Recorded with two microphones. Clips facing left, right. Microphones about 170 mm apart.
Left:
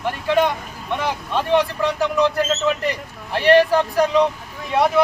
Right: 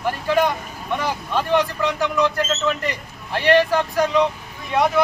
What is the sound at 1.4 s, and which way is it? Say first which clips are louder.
Speech: left 2 dB; 30° left (ahead or behind).